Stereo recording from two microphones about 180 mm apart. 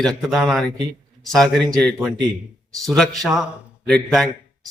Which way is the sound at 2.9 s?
Centre (ahead or behind).